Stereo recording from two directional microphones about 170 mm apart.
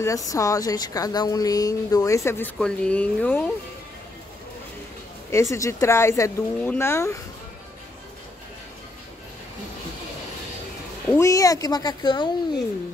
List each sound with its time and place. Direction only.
0.0 s speech: 20° left (ahead or behind)
5.3 s speech: 20° left (ahead or behind)
11.1 s speech: 20° left (ahead or behind)